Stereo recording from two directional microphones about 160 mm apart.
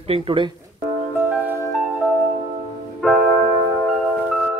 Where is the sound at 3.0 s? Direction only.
Centre (ahead or behind).